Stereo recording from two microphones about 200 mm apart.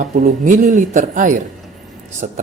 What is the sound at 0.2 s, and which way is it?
A woman's voice, 40° right (ahead or behind).